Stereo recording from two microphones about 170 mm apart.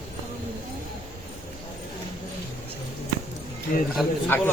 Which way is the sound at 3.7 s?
60° left (ahead or behind).